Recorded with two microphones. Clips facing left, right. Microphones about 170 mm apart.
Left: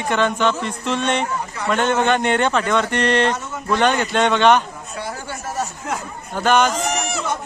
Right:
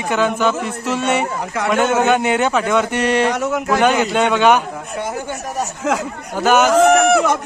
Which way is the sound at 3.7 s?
10° right (ahead or behind).